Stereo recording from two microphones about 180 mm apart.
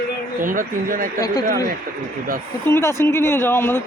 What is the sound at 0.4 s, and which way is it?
Speech, 50° right (ahead or behind).